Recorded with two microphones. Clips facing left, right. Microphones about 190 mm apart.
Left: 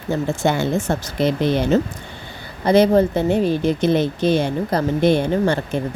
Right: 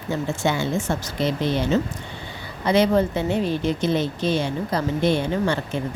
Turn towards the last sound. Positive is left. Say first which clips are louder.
# left 4 dB
turn(degrees=55)  # may be behind; listen again after turning